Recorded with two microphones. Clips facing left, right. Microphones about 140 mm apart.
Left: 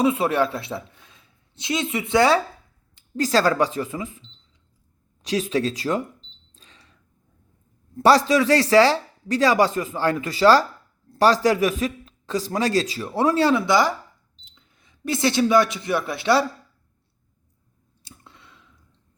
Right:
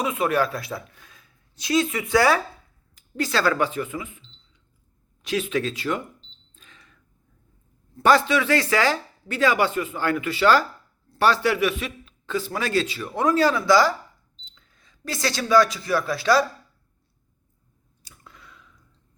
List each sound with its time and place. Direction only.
0.0 s speech: 30° left (ahead or behind)
2.9 s a man's voice: 35° left (ahead or behind)
5.2 s a man's voice: 35° left (ahead or behind)
6.5 s a sound: 35° left (ahead or behind)
8.0 s a man's voice: 35° left (ahead or behind)
18.0 s clicking: 30° left (ahead or behind)